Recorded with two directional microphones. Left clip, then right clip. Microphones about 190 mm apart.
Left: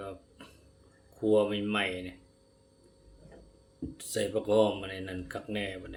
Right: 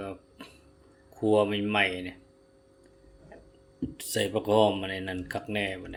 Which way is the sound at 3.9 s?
30° right (ahead or behind).